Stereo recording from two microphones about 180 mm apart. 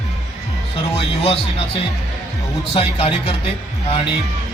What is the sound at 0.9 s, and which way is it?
Speech, 35° left (ahead or behind).